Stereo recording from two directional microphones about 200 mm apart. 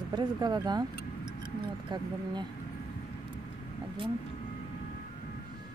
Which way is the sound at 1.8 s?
20° right (ahead or behind).